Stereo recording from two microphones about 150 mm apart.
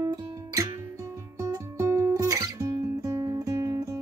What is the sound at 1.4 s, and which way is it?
Guitar, 20° right (ahead or behind).